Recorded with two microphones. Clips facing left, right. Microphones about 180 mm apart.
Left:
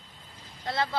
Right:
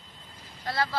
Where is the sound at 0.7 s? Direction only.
20° left (ahead or behind).